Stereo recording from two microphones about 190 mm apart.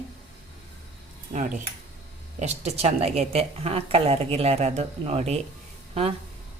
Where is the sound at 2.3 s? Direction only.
35° right (ahead or behind).